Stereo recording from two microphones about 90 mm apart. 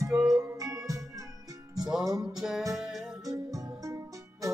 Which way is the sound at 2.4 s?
5° right (ahead or behind).